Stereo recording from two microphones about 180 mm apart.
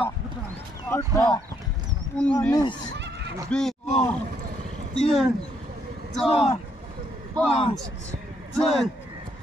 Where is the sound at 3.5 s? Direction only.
5° left (ahead or behind).